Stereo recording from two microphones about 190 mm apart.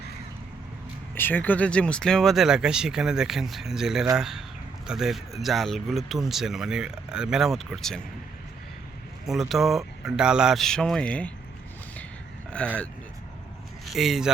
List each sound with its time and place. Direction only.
1.1 s speech: 10° left (ahead or behind)
9.2 s speech: centre (ahead or behind)
12.5 s speech: 5° left (ahead or behind)